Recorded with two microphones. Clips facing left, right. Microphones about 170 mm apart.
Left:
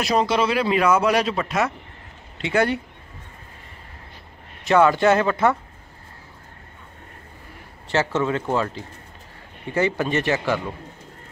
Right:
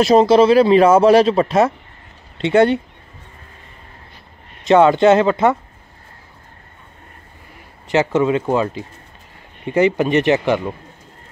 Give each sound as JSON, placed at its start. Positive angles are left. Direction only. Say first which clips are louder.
{"t": 0.0, "sound": "speech", "louder": "right 10 dB", "side_deg": -30}
{"t": 4.6, "sound": "speech", "louder": "right 5 dB", "side_deg": -20}
{"t": 7.9, "sound": "speech", "louder": "right 6 dB", "side_deg": -15}